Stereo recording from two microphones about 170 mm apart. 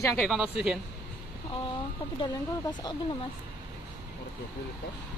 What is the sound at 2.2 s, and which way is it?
Speech, 25° left (ahead or behind).